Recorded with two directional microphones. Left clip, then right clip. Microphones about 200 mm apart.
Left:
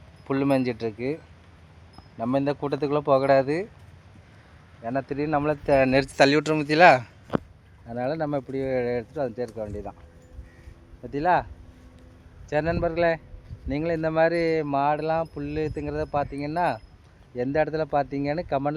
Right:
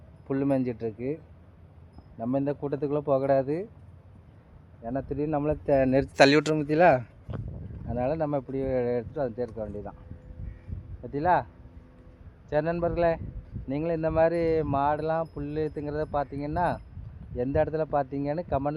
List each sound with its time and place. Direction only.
0.3 s speech: 25° left (ahead or behind)
4.8 s speech: 20° left (ahead or behind); by 9.9 s centre (ahead or behind)
11.1 s speech: 10° right (ahead or behind)
12.5 s speech: centre (ahead or behind)